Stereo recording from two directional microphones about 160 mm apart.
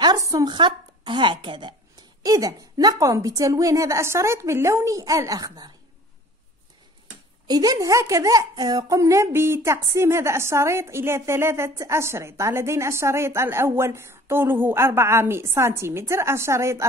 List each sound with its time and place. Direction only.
0.0 s a woman's voice: 25° right (ahead or behind)
7.4 s a woman's voice: 25° right (ahead or behind)